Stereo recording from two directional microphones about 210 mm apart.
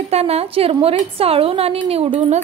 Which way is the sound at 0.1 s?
30° right (ahead or behind).